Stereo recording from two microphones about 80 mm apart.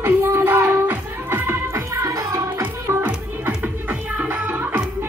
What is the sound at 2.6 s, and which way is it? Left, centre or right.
Music, right.